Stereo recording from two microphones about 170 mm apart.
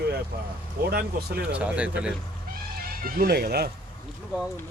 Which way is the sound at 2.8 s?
60° right (ahead or behind).